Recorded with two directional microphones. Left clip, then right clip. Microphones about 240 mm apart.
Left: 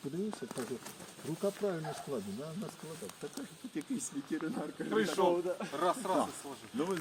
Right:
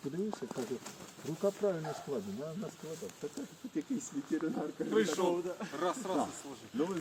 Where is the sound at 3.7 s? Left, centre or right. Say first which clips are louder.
Right 2 dB; centre; by 6.9 s left.